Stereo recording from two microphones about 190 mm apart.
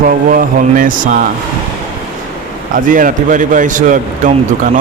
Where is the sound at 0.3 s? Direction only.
45° right (ahead or behind).